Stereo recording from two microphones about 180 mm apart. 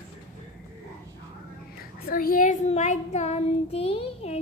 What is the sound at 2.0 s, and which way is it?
Child singing, 55° left (ahead or behind).